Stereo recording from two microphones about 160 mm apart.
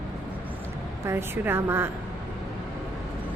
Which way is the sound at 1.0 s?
15° right (ahead or behind).